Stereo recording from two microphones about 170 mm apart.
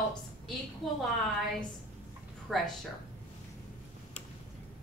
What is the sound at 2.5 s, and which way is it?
Speech, centre (ahead or behind).